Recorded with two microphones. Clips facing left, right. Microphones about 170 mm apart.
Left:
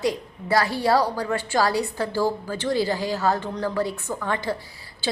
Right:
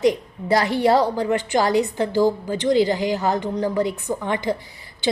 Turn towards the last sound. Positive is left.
turn(degrees=-20)  # may be behind; listen again after turning